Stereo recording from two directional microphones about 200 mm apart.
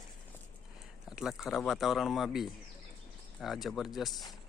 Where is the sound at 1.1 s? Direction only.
5° right (ahead or behind).